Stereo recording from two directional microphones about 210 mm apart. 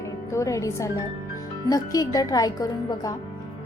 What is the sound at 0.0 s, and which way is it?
A woman's voice, 15° left (ahead or behind).